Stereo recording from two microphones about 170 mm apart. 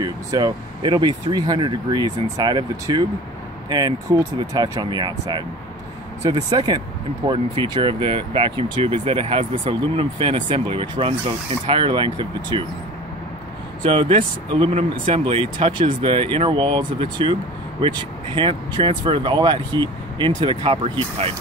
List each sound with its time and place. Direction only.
0.0 s speech: 25° right (ahead or behind)
13.8 s speech: 30° right (ahead or behind)